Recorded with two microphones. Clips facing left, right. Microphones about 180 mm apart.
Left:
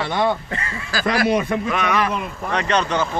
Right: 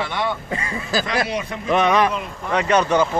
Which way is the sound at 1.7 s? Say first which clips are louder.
Right 7 dB; 25° right (ahead or behind).